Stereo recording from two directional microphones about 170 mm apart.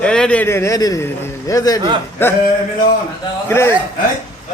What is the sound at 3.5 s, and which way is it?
Speech, 15° left (ahead or behind).